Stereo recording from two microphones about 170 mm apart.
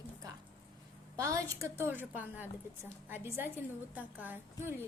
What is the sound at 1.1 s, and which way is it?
A woman's voice, 20° right (ahead or behind).